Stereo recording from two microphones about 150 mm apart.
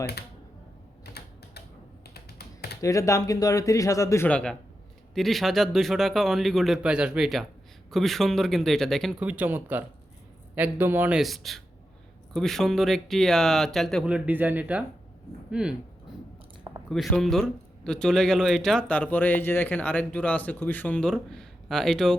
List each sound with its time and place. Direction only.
0.0 s speech: 90° left
2.0 s typing: 90° left
2.8 s speech: 20° left (ahead or behind)
4.3 s a man's voice: 5° left (ahead or behind)
9.2 s a man's voice: 10° right (ahead or behind)
11.2 s speech: centre (ahead or behind)
16.1 s chewing: 5° right (ahead or behind)
16.9 s a man's voice: centre (ahead or behind)